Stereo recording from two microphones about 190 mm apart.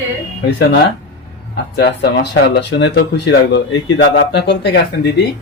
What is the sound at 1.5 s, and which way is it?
Speech, 60° left (ahead or behind).